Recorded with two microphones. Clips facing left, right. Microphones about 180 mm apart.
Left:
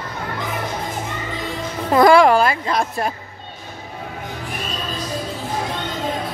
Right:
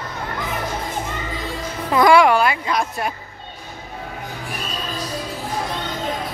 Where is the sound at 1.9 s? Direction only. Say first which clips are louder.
Left 2 dB; 40° left (ahead or behind).